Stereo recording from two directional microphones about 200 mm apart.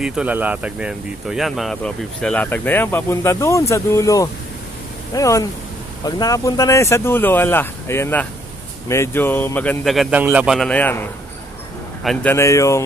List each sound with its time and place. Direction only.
0.0 s speech: 5° right (ahead or behind); by 12.8 s 15° left (ahead or behind)